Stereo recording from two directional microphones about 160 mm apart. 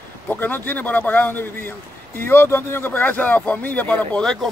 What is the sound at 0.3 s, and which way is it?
Speech, 10° left (ahead or behind).